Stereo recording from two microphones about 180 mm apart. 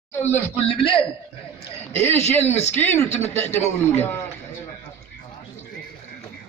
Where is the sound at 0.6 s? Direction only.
30° left (ahead or behind).